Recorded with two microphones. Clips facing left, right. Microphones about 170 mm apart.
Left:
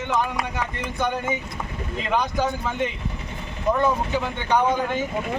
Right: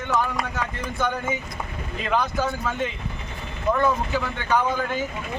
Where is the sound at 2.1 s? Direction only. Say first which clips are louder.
Left 1 dB; 15° left (ahead or behind).